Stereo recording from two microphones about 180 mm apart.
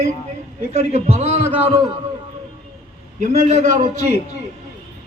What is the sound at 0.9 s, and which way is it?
Music, 35° right (ahead or behind).